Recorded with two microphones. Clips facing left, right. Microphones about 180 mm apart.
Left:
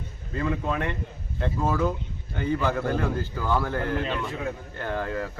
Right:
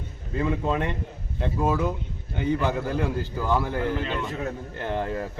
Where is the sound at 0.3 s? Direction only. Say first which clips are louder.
Right 2 dB; 20° right (ahead or behind).